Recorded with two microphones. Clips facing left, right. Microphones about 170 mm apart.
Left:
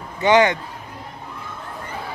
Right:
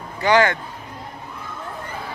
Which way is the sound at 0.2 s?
20° left (ahead or behind).